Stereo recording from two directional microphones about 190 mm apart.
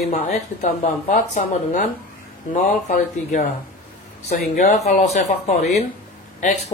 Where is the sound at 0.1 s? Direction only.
35° left (ahead or behind).